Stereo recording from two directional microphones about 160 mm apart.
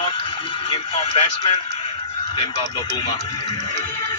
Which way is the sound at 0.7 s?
35° left (ahead or behind).